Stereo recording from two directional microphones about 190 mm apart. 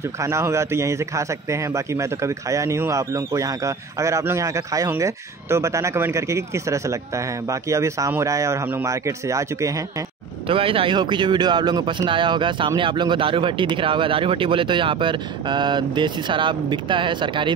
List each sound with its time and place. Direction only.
0.2 s a man's voice: 15° right (ahead or behind)
10.5 s speech: 30° right (ahead or behind)